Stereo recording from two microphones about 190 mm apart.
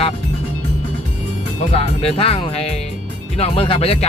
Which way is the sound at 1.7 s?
30° left (ahead or behind).